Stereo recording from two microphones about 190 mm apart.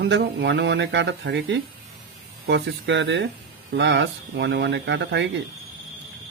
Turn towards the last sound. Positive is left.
turn(degrees=-70)  # may be behind; listen again after turning